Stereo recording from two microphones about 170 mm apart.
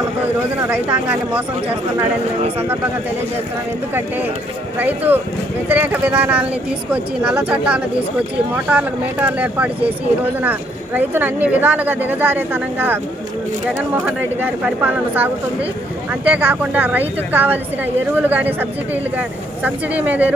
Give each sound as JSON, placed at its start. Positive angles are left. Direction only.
{"t": 0.7, "sound": "speech", "side_deg": -10}
{"t": 4.7, "sound": "speech", "side_deg": -10}